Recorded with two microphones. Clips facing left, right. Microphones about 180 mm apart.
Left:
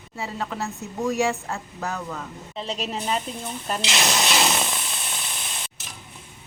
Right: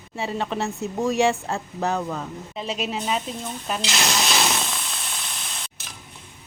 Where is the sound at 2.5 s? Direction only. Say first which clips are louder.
Right 1 dB; 5° right (ahead or behind).